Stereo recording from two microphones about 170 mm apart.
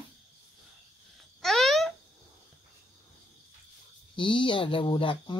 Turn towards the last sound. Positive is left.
turn(degrees=30)  # may be behind; listen again after turning